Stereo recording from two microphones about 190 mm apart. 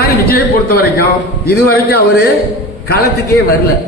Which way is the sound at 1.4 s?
55° left (ahead or behind).